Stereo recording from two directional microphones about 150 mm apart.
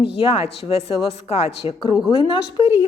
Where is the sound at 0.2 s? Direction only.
40° left (ahead or behind).